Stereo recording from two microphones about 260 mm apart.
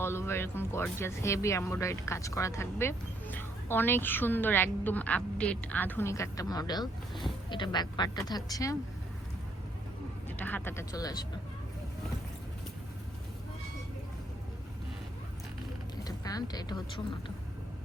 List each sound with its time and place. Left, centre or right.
0.0 s speech: centre
10.2 s speech: centre
16.0 s speech: centre